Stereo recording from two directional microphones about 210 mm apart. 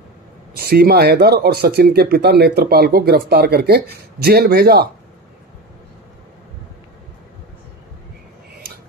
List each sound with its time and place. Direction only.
0.6 s speech: 45° right (ahead or behind)